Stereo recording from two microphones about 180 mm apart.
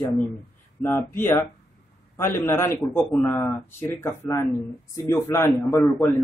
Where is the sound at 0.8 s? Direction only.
15° left (ahead or behind).